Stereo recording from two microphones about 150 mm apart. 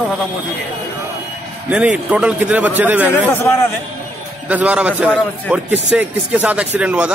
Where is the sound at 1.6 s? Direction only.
10° right (ahead or behind).